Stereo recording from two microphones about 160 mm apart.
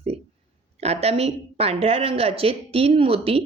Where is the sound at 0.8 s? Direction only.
40° right (ahead or behind).